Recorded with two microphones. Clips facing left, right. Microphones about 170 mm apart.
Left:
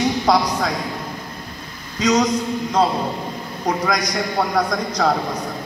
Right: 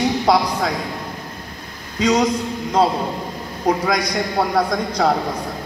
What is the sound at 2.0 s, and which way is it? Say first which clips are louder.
Speech: even; 30° right (ahead or behind).